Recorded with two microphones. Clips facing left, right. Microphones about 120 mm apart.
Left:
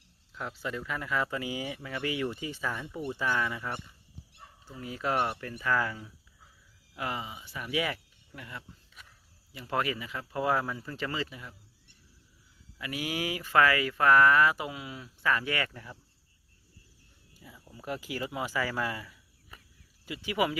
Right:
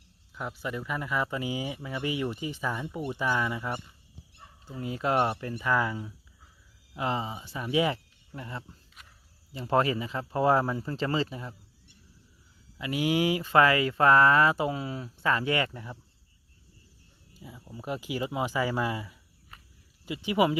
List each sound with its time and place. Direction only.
0.3 s speech: 15° right (ahead or behind)
4.8 s speech: 25° right (ahead or behind)
12.8 s speech: 25° right (ahead or behind)
17.3 s speech: 20° right (ahead or behind)